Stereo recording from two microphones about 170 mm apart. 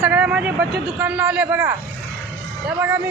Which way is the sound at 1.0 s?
10° right (ahead or behind).